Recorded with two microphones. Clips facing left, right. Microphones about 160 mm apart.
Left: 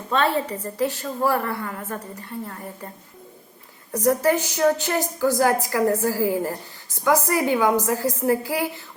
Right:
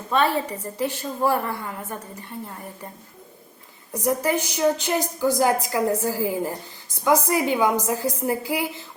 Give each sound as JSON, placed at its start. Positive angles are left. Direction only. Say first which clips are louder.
{"t": 0.1, "sound": "a woman's voice", "louder": "even", "side_deg": -15}
{"t": 3.9, "sound": "a woman's voice", "louder": "left 3 dB", "side_deg": -15}